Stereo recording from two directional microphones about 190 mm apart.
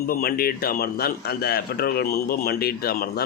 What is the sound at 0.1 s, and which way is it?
A man's voice, 50° left (ahead or behind).